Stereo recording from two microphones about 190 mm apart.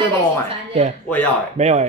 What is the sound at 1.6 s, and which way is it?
Speech, 35° right (ahead or behind).